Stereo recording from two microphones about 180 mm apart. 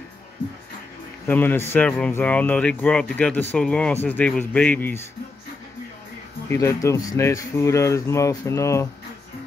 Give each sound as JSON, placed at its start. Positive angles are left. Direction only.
{"t": 1.2, "sound": "speech", "side_deg": 10}
{"t": 6.5, "sound": "speech", "side_deg": 15}